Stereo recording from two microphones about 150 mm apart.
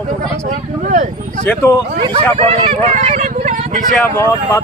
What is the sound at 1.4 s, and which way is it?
Speech, 5° left (ahead or behind).